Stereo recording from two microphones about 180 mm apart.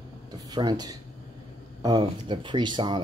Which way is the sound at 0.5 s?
25° right (ahead or behind).